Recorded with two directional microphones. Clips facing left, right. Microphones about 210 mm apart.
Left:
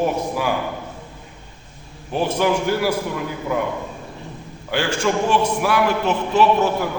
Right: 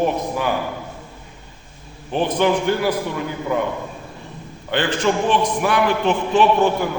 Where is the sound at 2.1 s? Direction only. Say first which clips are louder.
Right 1 dB; 5° left (ahead or behind).